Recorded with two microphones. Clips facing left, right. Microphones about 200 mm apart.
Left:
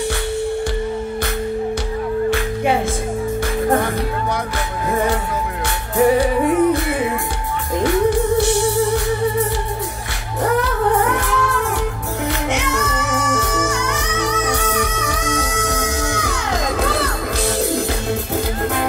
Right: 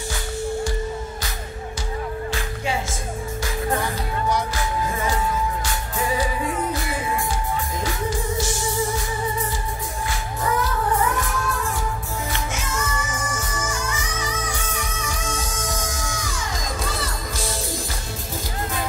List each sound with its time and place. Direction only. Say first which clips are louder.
2.3 s music: left 8 dB; 60° left (ahead or behind)
5.9 s music: left 11 dB; 65° left (ahead or behind)
7.8 s music: left 15 dB; 60° left (ahead or behind)